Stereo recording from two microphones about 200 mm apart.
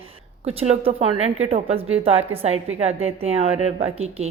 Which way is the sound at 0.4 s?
30° right (ahead or behind).